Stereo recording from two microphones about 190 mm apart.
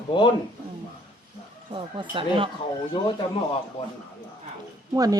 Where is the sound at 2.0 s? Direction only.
25° right (ahead or behind).